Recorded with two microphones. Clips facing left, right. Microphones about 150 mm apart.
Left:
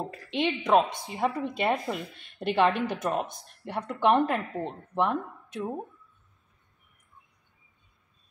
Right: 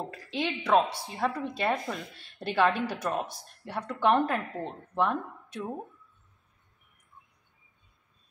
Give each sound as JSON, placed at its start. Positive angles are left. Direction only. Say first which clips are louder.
{"t": 0.3, "sound": "a woman's voice", "louder": "left 2 dB", "side_deg": 20}